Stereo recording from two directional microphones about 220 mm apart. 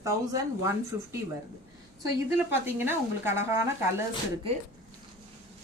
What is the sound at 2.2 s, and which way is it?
Speech, 10° right (ahead or behind).